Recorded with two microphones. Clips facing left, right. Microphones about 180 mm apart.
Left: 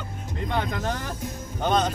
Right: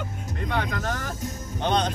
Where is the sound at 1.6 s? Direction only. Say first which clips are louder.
Left 1 dB; 5° left (ahead or behind).